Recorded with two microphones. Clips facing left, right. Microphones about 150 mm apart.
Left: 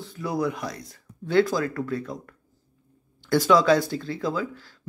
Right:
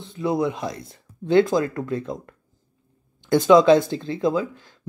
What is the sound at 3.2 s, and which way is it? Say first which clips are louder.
Speech: right 5 dB; 20° right (ahead or behind).